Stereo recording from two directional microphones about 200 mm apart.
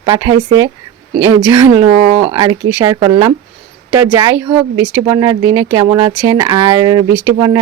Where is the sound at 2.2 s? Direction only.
15° right (ahead or behind).